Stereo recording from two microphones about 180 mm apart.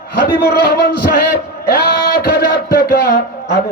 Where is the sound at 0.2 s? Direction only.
60° left (ahead or behind).